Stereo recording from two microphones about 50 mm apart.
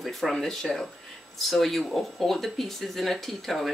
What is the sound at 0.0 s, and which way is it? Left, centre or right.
Speech, centre.